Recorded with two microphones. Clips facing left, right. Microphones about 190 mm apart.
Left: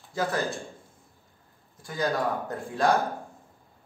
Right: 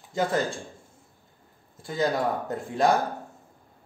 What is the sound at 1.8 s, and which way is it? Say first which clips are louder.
Speech: right 2 dB; 25° right (ahead or behind).